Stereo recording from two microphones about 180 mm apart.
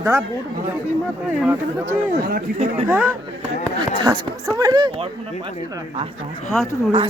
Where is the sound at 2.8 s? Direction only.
10° right (ahead or behind).